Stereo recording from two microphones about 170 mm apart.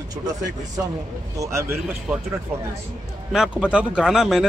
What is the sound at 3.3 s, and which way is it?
Speech, 5° right (ahead or behind).